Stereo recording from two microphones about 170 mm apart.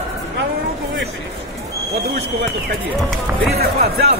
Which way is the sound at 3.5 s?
70° right (ahead or behind).